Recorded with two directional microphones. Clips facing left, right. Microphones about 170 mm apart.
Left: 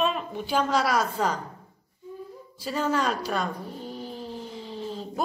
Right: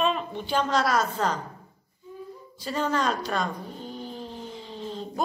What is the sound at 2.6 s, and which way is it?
Speech, 5° left (ahead or behind).